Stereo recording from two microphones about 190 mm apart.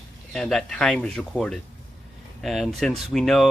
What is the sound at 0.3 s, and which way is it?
Speech, 5° left (ahead or behind).